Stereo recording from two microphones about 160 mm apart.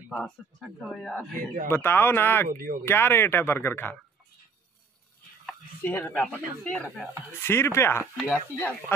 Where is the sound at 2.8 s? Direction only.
15° left (ahead or behind).